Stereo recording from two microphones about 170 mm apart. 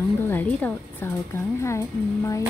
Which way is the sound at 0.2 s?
10° left (ahead or behind).